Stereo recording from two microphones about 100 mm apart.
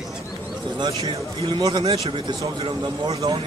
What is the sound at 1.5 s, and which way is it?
Speech, 45° right (ahead or behind).